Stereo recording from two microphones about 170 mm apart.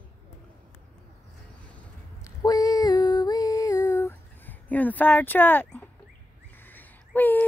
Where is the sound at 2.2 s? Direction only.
20° left (ahead or behind).